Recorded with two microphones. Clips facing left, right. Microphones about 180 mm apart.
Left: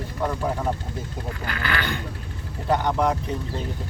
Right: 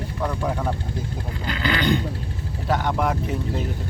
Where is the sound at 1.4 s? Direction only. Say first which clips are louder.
Right 6 dB; 20° right (ahead or behind).